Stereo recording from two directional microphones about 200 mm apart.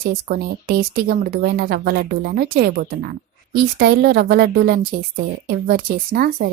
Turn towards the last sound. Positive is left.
turn(degrees=-50)  # may be behind; listen again after turning